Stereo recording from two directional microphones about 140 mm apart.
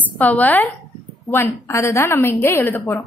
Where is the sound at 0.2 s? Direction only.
10° left (ahead or behind).